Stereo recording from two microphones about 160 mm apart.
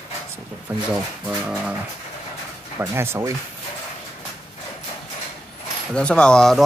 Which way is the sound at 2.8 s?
15° right (ahead or behind).